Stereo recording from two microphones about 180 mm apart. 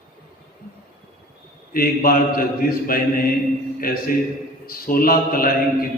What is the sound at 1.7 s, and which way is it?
Mantra, 55° left (ahead or behind).